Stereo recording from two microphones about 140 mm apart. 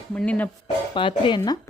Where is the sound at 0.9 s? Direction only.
35° left (ahead or behind).